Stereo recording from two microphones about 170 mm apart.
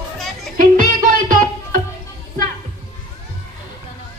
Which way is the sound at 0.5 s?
50° right (ahead or behind).